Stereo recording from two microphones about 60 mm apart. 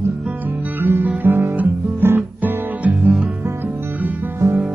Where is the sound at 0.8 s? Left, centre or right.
Right.